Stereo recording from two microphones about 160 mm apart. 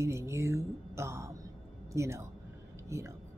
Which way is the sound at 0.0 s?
15° right (ahead or behind).